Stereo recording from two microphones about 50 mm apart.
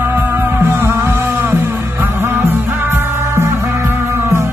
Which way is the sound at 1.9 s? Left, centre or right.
Right.